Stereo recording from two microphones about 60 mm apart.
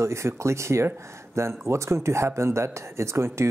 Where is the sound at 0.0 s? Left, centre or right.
Right.